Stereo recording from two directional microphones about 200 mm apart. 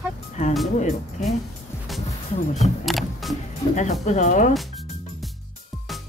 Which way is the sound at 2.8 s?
Centre (ahead or behind).